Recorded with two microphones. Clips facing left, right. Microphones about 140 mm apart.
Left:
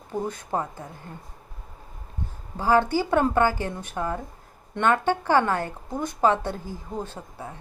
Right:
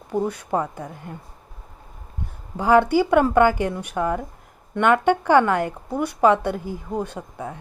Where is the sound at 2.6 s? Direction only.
15° right (ahead or behind).